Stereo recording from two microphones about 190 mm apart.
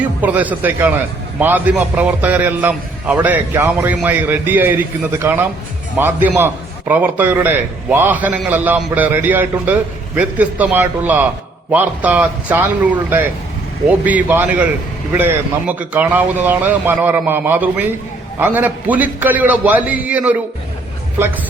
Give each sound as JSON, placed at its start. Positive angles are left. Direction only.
{"t": 0.0, "sound": "a man's voice", "side_deg": -10}